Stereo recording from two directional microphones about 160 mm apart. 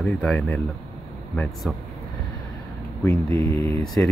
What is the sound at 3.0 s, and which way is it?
Speech, 20° left (ahead or behind).